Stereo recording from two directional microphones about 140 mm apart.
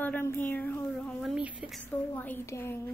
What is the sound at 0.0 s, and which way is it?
Speech, 15° left (ahead or behind).